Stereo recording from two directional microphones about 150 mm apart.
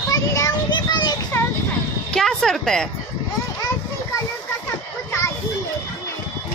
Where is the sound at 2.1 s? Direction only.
5° left (ahead or behind).